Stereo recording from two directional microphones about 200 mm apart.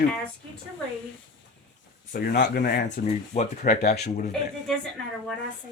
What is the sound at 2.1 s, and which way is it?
Speech, 45° left (ahead or behind).